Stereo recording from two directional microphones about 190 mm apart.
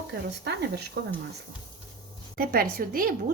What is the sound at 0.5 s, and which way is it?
Speech, 60° right (ahead or behind).